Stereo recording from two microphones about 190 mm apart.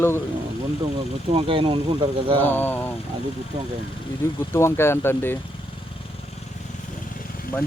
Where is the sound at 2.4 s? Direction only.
10° left (ahead or behind).